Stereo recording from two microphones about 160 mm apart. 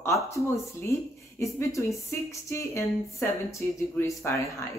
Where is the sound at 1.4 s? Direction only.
20° left (ahead or behind).